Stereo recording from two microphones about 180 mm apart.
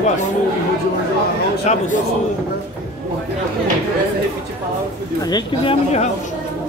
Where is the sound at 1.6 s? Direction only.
40° left (ahead or behind).